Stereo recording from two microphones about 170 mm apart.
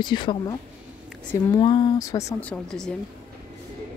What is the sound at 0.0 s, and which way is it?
Speech, 25° left (ahead or behind).